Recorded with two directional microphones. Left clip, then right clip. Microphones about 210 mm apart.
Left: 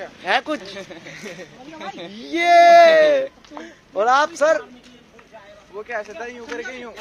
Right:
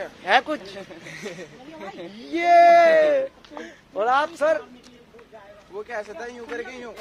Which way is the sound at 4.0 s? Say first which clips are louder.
Left 4 dB; 35° left (ahead or behind).